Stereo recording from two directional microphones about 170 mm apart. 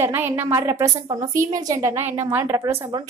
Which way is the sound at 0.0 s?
10° right (ahead or behind).